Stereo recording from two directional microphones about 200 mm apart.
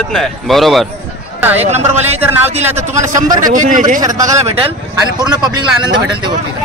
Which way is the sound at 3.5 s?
40° right (ahead or behind).